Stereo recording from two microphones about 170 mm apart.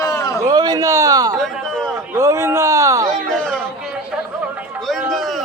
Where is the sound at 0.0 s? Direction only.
20° left (ahead or behind).